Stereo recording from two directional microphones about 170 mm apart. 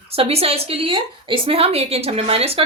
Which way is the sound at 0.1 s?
35° right (ahead or behind).